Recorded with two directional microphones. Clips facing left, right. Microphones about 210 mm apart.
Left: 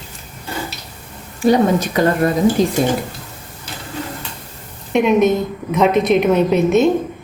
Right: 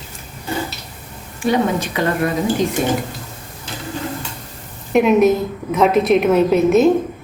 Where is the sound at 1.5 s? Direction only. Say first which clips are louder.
Left 4 dB; 40° left (ahead or behind).